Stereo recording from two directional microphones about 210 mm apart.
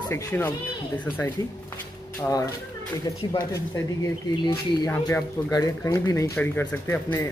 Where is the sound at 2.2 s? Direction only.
15° left (ahead or behind).